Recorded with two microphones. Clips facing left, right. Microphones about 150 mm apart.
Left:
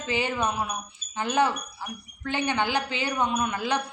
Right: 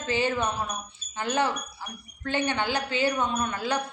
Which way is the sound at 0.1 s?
15° left (ahead or behind).